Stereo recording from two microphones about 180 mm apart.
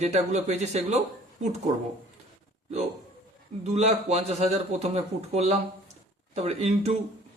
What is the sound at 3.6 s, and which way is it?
Speech, 40° right (ahead or behind).